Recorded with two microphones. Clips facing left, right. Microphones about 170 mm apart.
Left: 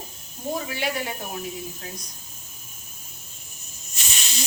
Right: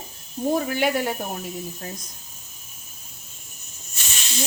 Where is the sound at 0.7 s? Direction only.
50° right (ahead or behind).